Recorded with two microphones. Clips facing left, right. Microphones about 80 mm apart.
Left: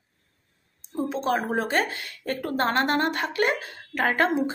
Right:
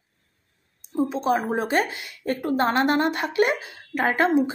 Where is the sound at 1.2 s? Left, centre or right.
Centre.